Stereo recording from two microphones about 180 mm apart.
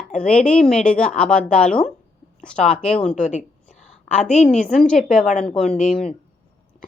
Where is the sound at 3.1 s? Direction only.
45° left (ahead or behind).